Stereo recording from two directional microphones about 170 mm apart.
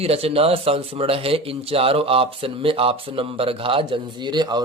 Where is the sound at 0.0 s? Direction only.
35° right (ahead or behind).